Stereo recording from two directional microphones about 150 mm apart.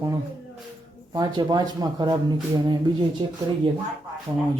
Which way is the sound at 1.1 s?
30° right (ahead or behind).